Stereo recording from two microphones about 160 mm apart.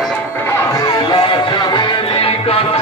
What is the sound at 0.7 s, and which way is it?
Music, 25° left (ahead or behind).